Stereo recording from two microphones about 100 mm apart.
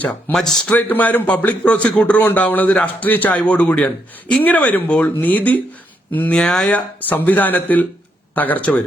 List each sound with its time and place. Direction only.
0.3 s a man's voice: 5° left (ahead or behind)
6.7 s a man's voice: 15° left (ahead or behind)